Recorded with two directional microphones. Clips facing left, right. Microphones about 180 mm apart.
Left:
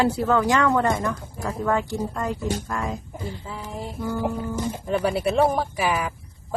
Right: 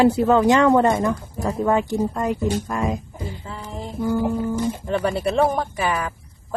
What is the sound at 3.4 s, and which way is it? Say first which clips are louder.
Speech: right 1 dB; centre (ahead or behind).